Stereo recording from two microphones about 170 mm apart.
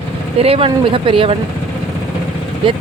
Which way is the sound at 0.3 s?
35° right (ahead or behind).